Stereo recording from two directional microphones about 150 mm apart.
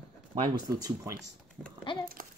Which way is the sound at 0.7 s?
25° right (ahead or behind).